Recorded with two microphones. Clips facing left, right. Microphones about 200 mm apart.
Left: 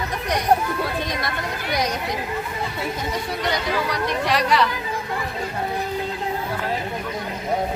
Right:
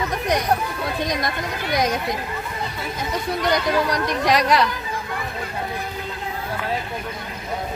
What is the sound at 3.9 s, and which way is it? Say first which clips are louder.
Speech: right 2 dB; 40° right (ahead or behind).